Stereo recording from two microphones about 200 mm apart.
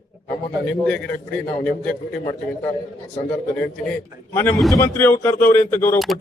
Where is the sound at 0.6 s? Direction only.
5° left (ahead or behind).